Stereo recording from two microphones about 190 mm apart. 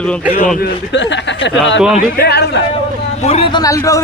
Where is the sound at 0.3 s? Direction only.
45° left (ahead or behind).